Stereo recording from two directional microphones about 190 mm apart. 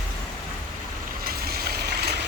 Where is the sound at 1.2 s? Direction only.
55° right (ahead or behind).